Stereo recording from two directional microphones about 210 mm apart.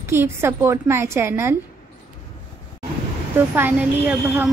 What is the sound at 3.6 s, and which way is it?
Speech, 10° right (ahead or behind).